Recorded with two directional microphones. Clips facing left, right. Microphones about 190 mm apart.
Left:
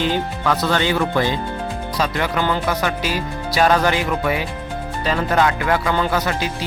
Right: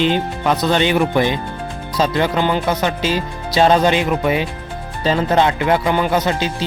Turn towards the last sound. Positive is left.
turn(degrees=-25)  # may be behind; listen again after turning